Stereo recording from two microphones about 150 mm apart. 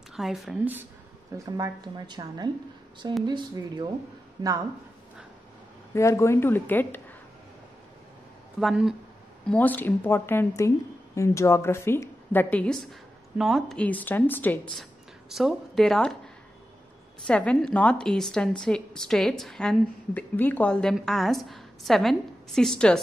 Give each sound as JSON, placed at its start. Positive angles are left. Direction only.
{"t": 0.1, "sound": "speech", "side_deg": 0}
{"t": 1.3, "sound": "a woman's voice", "side_deg": -20}
{"t": 5.9, "sound": "a woman's voice", "side_deg": 20}
{"t": 8.5, "sound": "a woman's voice", "side_deg": 0}
{"t": 9.5, "sound": "a woman's voice", "side_deg": 10}
{"t": 13.7, "sound": "a woman's voice", "side_deg": 10}
{"t": 14.8, "sound": "speech", "side_deg": 0}
{"t": 17.3, "sound": "a woman's voice", "side_deg": 5}